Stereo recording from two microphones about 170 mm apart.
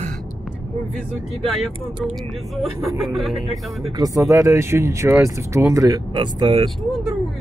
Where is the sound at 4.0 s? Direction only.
20° right (ahead or behind).